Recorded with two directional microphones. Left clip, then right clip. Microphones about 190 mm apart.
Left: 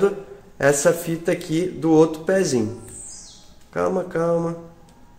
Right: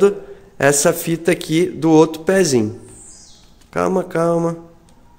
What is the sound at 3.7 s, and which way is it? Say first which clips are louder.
Speech: right 4 dB; 45° right (ahead or behind).